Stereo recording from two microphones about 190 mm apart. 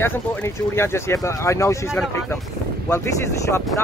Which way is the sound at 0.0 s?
10° left (ahead or behind).